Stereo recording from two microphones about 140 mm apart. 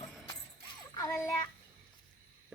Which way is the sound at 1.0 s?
20° left (ahead or behind).